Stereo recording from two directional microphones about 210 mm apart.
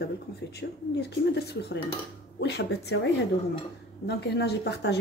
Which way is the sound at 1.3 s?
50° left (ahead or behind).